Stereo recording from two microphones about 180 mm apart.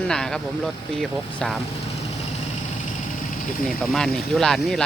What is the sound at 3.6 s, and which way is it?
Speech, 5° left (ahead or behind).